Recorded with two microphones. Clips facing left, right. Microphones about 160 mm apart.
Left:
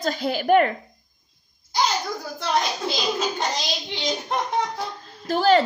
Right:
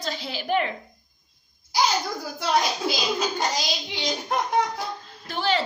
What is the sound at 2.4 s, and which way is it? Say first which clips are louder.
A child's voice: right 1 dB; 5° right (ahead or behind).